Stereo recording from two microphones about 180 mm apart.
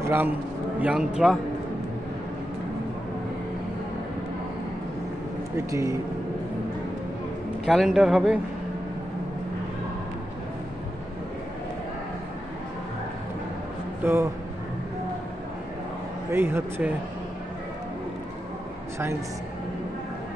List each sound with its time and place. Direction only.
0.0 s a man's voice: 10° right (ahead or behind)
5.7 s speech: 15° right (ahead or behind)
7.6 s a man's voice: centre (ahead or behind)
14.0 s speech: 15° right (ahead or behind)
16.3 s speech: 15° right (ahead or behind)